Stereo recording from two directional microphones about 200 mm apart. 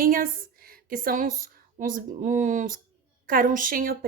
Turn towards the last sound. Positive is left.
turn(degrees=-45)  # may be behind; listen again after turning